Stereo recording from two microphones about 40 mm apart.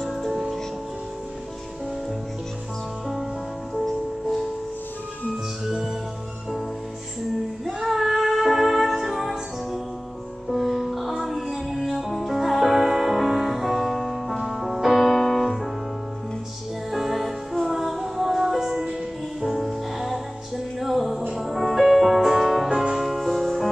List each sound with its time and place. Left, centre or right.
0.0 s music: centre
3.7 s music: centre
7.6 s music: centre
10.5 s music: centre
16.9 s music: centre
19.4 s music: centre